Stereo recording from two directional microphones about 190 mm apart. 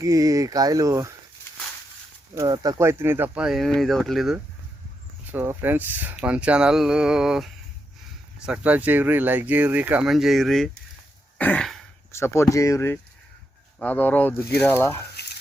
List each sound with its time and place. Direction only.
0.0 s speech: 15° right (ahead or behind)
2.3 s speech: 15° right (ahead or behind); by 4.4 s centre (ahead or behind)
5.3 s speech: 10° right (ahead or behind)
11.3 s throat clearing: 5° left (ahead or behind)
12.1 s speech: 15° left (ahead or behind)